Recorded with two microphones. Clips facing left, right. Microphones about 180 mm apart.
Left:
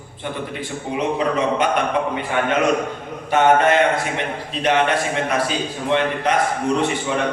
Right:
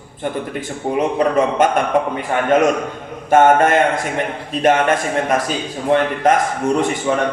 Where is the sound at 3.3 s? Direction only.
45° right (ahead or behind).